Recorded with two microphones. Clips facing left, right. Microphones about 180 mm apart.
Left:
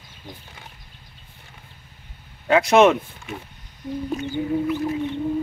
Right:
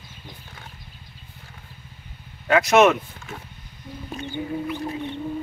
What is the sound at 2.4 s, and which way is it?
Speech, 30° left (ahead or behind).